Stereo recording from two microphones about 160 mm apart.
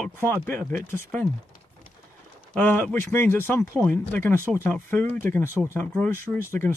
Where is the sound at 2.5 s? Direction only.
10° left (ahead or behind).